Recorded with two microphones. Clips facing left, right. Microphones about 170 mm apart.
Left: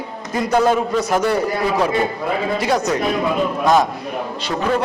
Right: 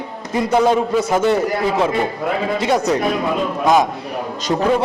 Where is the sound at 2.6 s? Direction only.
25° right (ahead or behind).